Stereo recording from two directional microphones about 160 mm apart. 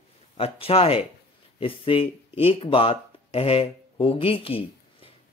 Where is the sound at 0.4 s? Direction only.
35° left (ahead or behind).